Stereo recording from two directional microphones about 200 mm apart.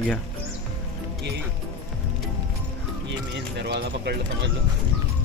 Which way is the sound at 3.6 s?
55° right (ahead or behind).